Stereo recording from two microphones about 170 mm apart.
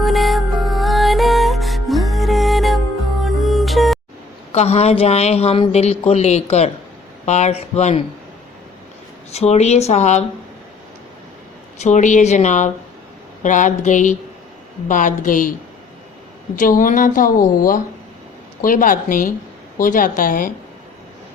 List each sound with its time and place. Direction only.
0.0 s music: centre (ahead or behind)
4.5 s a woman's voice: 40° left (ahead or behind)
9.3 s a woman's voice: 40° left (ahead or behind)
11.8 s a woman's voice: 45° left (ahead or behind)
16.6 s a woman's voice: 55° left (ahead or behind)
18.6 s a woman's voice: 55° left (ahead or behind)